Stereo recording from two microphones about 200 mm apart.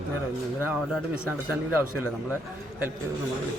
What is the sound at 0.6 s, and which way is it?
Speech, 5° right (ahead or behind).